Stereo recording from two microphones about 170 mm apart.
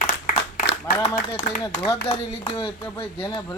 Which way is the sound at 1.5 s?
70° left (ahead or behind).